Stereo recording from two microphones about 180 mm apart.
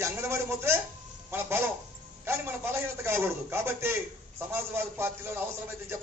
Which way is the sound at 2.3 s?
15° right (ahead or behind).